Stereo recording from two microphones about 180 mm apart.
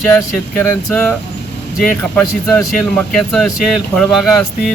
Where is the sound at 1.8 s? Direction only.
10° left (ahead or behind).